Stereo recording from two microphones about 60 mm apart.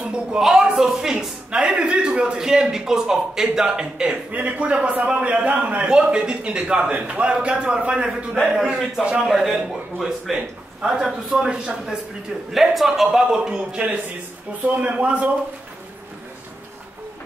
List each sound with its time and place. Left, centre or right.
0.1 s a man's voice: centre